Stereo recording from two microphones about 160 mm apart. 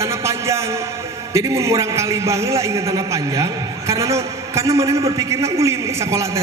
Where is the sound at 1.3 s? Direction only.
20° right (ahead or behind).